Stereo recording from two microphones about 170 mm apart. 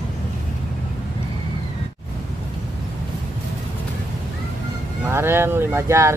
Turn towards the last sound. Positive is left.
turn(degrees=-15)  # may be behind; listen again after turning